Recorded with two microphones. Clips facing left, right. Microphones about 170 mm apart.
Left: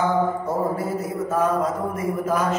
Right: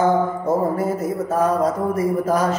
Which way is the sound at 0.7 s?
40° right (ahead or behind).